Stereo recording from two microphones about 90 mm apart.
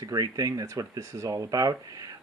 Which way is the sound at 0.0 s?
45° right (ahead or behind).